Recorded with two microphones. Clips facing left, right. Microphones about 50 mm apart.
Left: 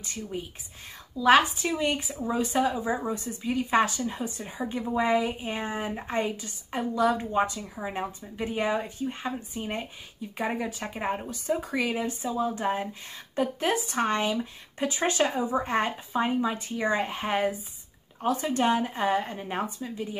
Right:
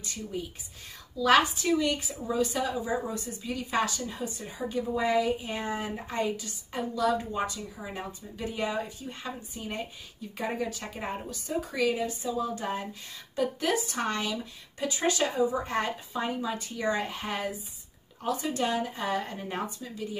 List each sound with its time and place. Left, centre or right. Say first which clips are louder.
0.0 s a woman's voice: left 1 dB; left
19.0 s speech: left 4 dB; left